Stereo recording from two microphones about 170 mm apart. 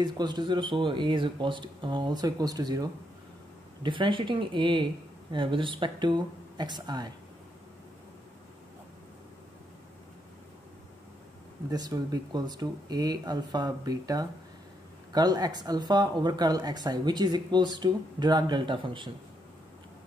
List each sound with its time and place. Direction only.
0.0 s speech: 25° right (ahead or behind)
11.7 s speech: 20° right (ahead or behind)